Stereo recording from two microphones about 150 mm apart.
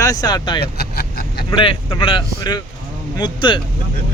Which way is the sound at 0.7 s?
90° left.